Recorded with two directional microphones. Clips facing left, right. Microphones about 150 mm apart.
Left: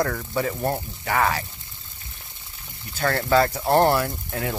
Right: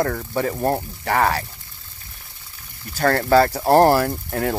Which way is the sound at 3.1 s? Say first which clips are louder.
Right 4 dB; 40° right (ahead or behind).